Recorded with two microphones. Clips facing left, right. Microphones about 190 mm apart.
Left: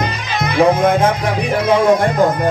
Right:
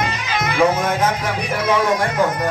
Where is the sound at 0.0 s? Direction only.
30° left (ahead or behind).